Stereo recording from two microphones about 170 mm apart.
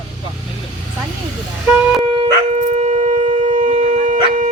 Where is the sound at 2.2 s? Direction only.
45° right (ahead or behind).